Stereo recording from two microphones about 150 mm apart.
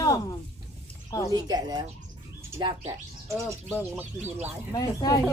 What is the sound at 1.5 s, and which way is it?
Speech, 25° right (ahead or behind).